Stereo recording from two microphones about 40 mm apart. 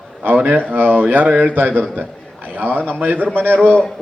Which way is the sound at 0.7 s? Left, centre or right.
Right.